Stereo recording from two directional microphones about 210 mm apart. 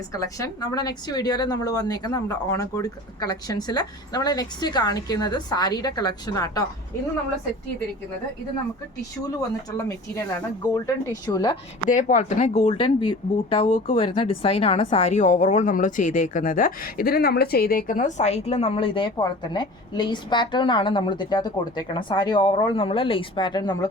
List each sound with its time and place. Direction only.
0.1 s a woman's voice: 15° left (ahead or behind)
9.7 s a woman's voice: 15° left (ahead or behind)
11.9 s a woman's voice: 35° left (ahead or behind); by 23.7 s 20° left (ahead or behind)